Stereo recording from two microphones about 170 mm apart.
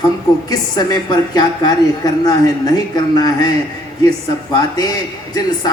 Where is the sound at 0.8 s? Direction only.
25° left (ahead or behind).